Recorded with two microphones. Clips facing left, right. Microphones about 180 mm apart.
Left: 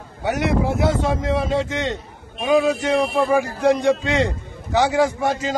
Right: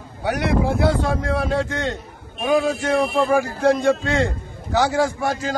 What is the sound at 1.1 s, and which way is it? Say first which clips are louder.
Speech: left 1 dB; 20° left (ahead or behind).